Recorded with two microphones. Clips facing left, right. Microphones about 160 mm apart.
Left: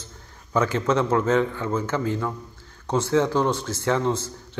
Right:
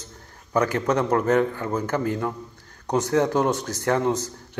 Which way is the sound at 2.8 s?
15° right (ahead or behind).